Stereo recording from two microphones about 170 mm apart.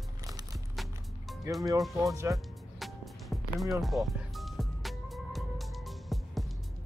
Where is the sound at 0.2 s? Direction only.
20° right (ahead or behind).